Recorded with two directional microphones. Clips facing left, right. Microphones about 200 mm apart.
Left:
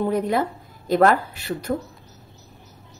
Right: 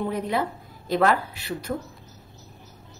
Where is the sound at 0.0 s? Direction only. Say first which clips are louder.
Left 4 dB; 45° left (ahead or behind).